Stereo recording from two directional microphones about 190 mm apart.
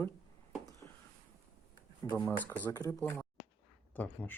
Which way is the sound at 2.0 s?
10° left (ahead or behind).